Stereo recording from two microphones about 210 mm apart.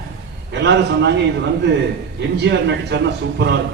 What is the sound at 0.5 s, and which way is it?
Speech, 55° right (ahead or behind).